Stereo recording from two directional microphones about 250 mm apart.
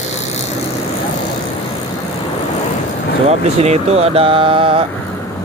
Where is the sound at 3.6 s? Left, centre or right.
Right.